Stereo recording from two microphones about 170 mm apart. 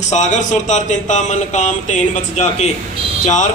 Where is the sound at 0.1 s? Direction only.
45° left (ahead or behind).